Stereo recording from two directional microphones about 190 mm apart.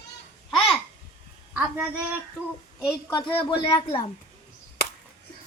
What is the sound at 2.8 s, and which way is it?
Speech, 20° left (ahead or behind).